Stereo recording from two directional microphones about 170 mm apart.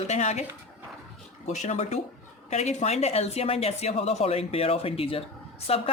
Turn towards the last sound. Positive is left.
turn(degrees=35)  # may be behind; listen again after turning